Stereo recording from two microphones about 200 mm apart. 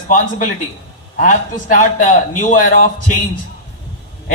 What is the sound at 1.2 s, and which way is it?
A man's voice, 40° left (ahead or behind).